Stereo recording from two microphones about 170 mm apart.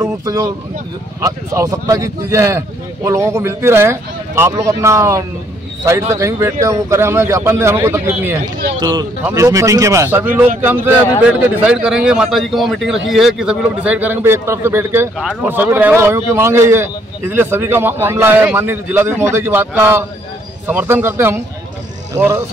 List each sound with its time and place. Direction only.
0.0 s a sound: 15° right (ahead or behind)
1.2 s speech: 20° right (ahead or behind)
8.7 s a man's voice: 25° right (ahead or behind)